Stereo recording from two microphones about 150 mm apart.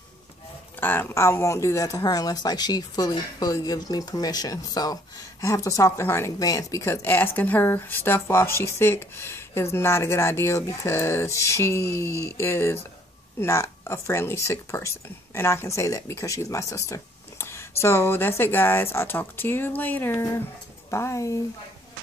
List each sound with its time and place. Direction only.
0.7 s speech: 15° left (ahead or behind)